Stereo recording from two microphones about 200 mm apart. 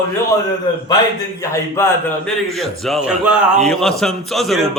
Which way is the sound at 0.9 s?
20° left (ahead or behind).